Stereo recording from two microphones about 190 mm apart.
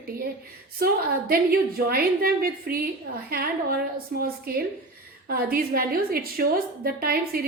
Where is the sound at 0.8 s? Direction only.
50° right (ahead or behind).